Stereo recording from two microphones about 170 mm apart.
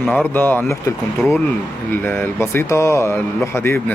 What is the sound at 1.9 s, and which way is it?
Speech, 10° left (ahead or behind).